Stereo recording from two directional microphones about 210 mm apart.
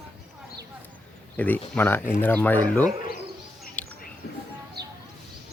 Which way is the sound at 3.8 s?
5° left (ahead or behind).